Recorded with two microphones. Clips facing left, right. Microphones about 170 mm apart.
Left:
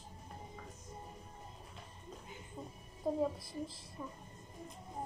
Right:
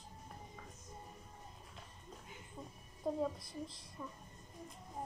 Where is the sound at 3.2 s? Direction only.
Centre (ahead or behind).